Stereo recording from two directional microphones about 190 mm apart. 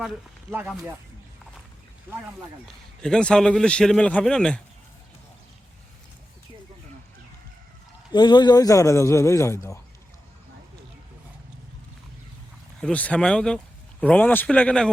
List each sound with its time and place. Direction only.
0.0 s speech: 5° right (ahead or behind)
3.0 s a man's voice: 5° left (ahead or behind)
8.1 s a man's voice: 25° left (ahead or behind)
12.8 s a man's voice: 5° left (ahead or behind)